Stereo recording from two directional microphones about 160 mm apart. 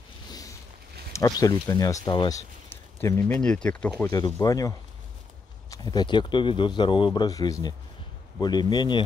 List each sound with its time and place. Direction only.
1.1 s speech: 20° left (ahead or behind)
4.1 s speech: 25° left (ahead or behind)